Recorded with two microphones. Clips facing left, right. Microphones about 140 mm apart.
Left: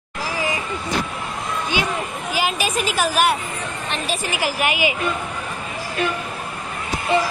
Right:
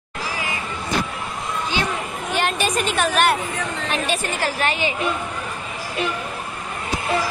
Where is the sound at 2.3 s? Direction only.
5° left (ahead or behind).